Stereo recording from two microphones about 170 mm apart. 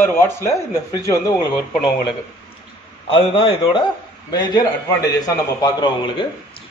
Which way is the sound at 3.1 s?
30° left (ahead or behind).